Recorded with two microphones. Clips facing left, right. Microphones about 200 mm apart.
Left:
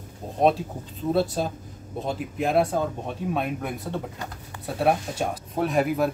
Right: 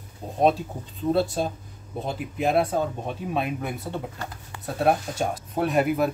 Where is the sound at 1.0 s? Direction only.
5° left (ahead or behind).